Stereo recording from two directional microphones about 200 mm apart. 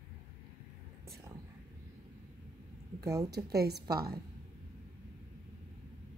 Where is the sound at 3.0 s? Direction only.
15° right (ahead or behind).